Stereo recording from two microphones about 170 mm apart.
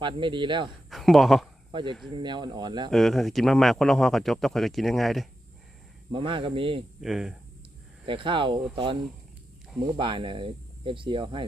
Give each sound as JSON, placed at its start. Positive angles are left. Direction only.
{"t": 0.0, "sound": "speech", "side_deg": -30}
{"t": 0.9, "sound": "speech", "side_deg": 0}
{"t": 1.7, "sound": "speech", "side_deg": -30}
{"t": 2.9, "sound": "speech", "side_deg": 0}
{"t": 6.1, "sound": "speech", "side_deg": -30}
{"t": 7.0, "sound": "speech", "side_deg": 0}
{"t": 8.0, "sound": "speech", "side_deg": -30}
{"t": 10.0, "sound": "speech", "side_deg": -30}